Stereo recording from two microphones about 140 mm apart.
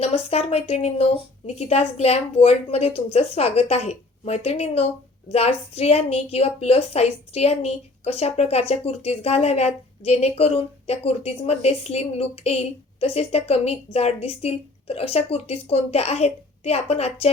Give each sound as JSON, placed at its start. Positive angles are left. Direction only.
{"t": 0.0, "sound": "a woman's voice", "side_deg": 45}